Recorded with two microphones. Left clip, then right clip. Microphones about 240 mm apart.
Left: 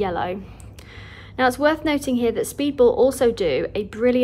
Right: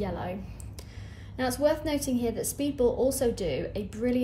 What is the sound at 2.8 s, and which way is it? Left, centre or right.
Speech, centre.